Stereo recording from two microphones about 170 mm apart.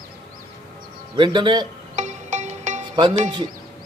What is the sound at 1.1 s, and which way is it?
Speech, 30° right (ahead or behind).